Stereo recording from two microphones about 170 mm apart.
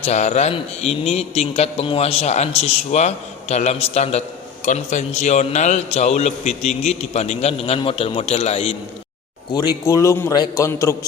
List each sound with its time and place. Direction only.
0.0 s a man's voice: 40° left (ahead or behind)
9.6 s a man's voice: 20° left (ahead or behind)